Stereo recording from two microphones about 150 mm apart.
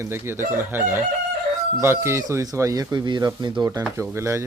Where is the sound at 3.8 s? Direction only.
15° right (ahead or behind).